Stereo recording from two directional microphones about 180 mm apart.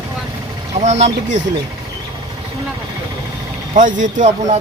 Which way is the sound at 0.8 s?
40° right (ahead or behind).